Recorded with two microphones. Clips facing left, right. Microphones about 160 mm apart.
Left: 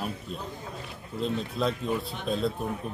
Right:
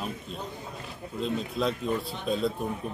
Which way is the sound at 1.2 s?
Centre (ahead or behind).